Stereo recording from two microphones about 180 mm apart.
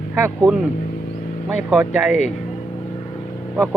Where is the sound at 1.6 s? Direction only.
10° right (ahead or behind).